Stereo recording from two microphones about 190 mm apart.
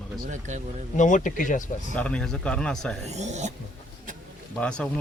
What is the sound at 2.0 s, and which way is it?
Speech, 5° left (ahead or behind).